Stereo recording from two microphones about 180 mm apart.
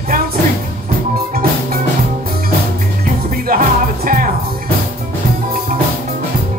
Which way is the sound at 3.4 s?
50° right (ahead or behind).